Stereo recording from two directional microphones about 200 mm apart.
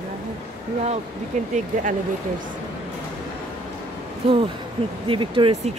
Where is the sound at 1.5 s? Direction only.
40° right (ahead or behind).